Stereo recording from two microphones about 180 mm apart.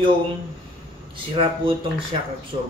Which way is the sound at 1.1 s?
30° right (ahead or behind).